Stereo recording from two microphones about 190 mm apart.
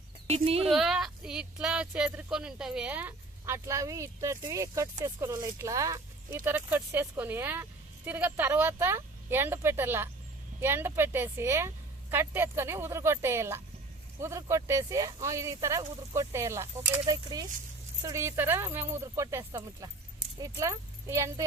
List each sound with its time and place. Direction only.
0.3 s speech: 30° right (ahead or behind)
0.7 s speech: centre (ahead or behind)